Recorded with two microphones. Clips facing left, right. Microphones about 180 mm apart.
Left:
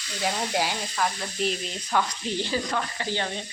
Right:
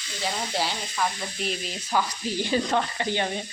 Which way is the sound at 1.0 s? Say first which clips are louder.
Left 1 dB; centre (ahead or behind).